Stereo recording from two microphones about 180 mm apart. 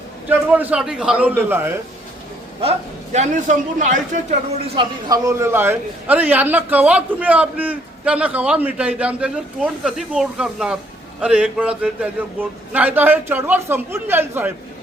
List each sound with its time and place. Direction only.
0.3 s a man's voice: 10° right (ahead or behind)
2.6 s a man's voice: 35° right (ahead or behind)
5.0 s a man's voice: 20° right (ahead or behind)